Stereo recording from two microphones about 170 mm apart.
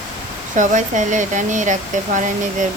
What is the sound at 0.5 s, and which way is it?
Speech, 45° right (ahead or behind).